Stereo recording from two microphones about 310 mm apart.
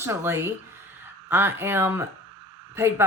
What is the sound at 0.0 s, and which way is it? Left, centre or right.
Speech, centre.